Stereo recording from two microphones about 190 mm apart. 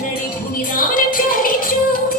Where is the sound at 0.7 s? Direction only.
45° left (ahead or behind).